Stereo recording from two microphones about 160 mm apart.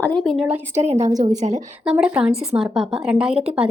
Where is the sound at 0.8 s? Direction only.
45° right (ahead or behind).